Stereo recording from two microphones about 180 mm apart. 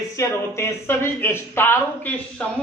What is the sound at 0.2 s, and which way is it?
A man's voice, 15° left (ahead or behind).